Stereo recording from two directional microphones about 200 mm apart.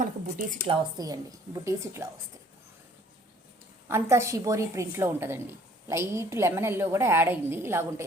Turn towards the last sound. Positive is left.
turn(degrees=-10)  # may be behind; listen again after turning